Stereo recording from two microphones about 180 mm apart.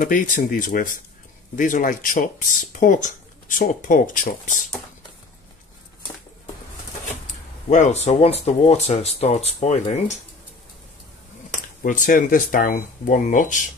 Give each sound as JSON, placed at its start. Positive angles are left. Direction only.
{"t": 0.0, "sound": "speech", "side_deg": 50}
{"t": 7.7, "sound": "speech", "side_deg": 40}
{"t": 11.8, "sound": "speech", "side_deg": 50}